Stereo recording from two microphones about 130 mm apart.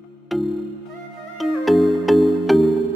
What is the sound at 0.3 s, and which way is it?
Music, centre (ahead or behind).